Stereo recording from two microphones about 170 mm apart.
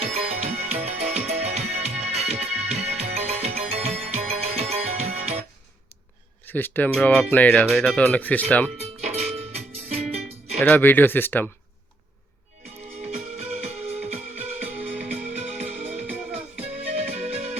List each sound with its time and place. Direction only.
0.0 s music: 35° right (ahead or behind)
6.4 s speech: 10° left (ahead or behind)
8.8 s music: 40° right (ahead or behind)
10.6 s speech: 10° left (ahead or behind)
13.1 s music: 40° right (ahead or behind)
14.8 s music: 10° right (ahead or behind)
15.1 s music: 45° right (ahead or behind)
16.7 s music: 40° right (ahead or behind)